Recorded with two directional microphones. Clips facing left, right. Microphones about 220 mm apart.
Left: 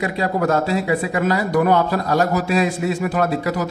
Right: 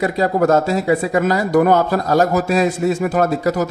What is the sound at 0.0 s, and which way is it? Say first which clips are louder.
A man's voice: right 4 dB; 40° right (ahead or behind).